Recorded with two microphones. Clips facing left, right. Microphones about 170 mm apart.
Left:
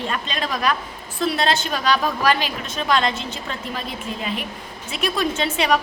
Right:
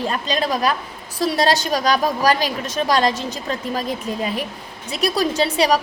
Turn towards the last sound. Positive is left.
turn(degrees=-35)  # may be behind; listen again after turning